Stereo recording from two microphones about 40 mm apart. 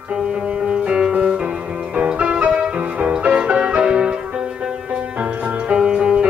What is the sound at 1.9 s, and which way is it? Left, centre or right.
Music, right.